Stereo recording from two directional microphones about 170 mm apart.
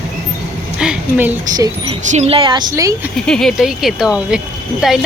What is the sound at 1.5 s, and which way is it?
Speech, 25° right (ahead or behind).